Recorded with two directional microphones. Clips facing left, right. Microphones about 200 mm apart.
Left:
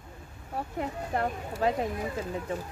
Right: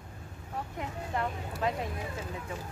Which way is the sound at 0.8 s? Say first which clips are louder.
Left 4 dB; 40° left (ahead or behind).